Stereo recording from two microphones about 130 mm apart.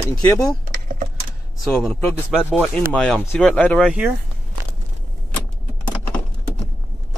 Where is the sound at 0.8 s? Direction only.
90° right.